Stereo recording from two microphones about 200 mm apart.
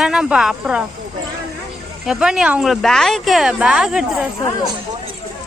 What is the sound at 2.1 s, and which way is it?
Speech, 5° right (ahead or behind).